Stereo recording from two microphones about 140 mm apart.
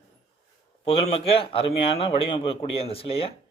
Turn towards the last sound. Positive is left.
turn(degrees=45)  # may be behind; listen again after turning